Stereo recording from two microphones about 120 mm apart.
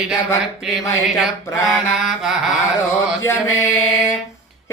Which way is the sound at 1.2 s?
Centre (ahead or behind).